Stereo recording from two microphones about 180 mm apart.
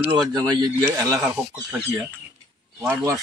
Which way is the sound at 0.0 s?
20° right (ahead or behind).